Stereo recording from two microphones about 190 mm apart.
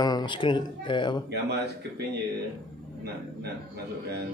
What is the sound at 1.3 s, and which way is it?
Speech, 55° right (ahead or behind).